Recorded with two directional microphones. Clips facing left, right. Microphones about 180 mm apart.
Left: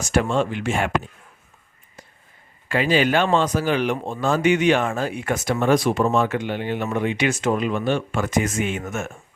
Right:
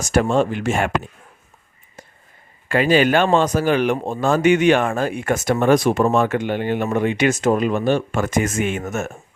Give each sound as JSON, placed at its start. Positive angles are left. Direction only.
{"t": 0.0, "sound": "speech", "side_deg": -45}
{"t": 2.6, "sound": "speech", "side_deg": -50}